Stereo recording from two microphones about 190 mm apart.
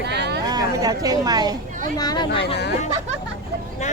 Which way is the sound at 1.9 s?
20° left (ahead or behind).